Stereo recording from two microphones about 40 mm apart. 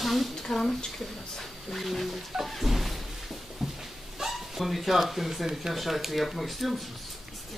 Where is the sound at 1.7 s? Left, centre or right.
Centre.